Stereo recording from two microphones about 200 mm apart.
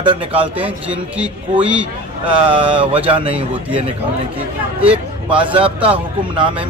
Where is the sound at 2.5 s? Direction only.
25° right (ahead or behind).